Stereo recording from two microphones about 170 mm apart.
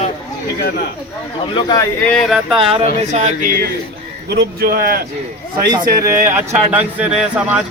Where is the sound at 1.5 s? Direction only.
25° left (ahead or behind).